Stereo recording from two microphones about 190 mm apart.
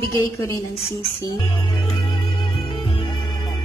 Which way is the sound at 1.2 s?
25° left (ahead or behind).